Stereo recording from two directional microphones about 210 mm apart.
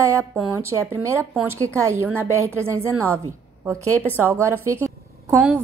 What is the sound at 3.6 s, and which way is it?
Speech, 5° left (ahead or behind).